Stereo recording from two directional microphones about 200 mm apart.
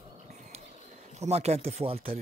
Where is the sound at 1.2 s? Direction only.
30° right (ahead or behind).